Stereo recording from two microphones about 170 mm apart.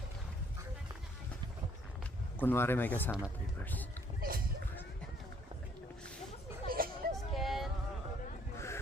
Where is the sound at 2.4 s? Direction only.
10° left (ahead or behind).